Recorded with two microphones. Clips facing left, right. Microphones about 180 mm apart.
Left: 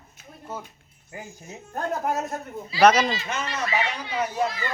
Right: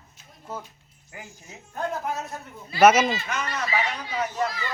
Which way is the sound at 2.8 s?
5° right (ahead or behind).